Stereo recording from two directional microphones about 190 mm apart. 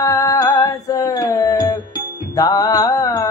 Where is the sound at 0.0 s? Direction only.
20° left (ahead or behind).